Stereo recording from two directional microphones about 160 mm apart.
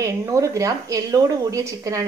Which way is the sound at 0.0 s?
20° right (ahead or behind).